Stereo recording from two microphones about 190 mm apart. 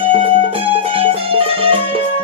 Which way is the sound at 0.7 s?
30° right (ahead or behind).